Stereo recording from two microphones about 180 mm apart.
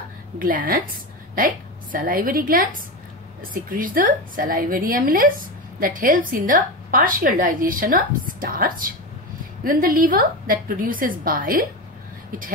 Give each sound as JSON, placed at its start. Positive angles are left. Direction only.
{"t": 0.4, "sound": "a woman's voice", "side_deg": -50}